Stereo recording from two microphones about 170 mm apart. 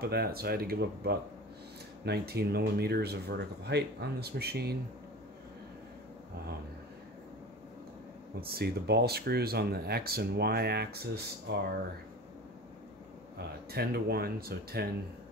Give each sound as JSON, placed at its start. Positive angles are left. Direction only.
{"t": 0.0, "sound": "speech", "side_deg": -65}
{"t": 8.4, "sound": "speech", "side_deg": -65}
{"t": 13.4, "sound": "speech", "side_deg": -65}